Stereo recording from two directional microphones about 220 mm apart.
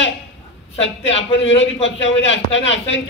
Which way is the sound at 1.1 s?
55° left (ahead or behind).